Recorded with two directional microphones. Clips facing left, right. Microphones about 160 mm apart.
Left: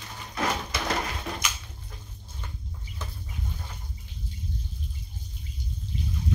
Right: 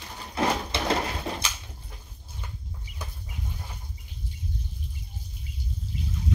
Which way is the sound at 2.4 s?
10° right (ahead or behind).